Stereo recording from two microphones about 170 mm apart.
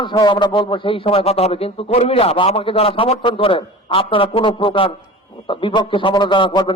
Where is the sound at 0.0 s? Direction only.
25° left (ahead or behind).